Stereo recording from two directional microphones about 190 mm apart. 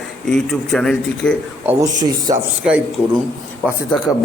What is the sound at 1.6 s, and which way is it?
Speech, 20° right (ahead or behind).